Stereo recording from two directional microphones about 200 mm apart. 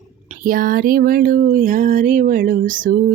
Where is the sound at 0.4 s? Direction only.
45° right (ahead or behind).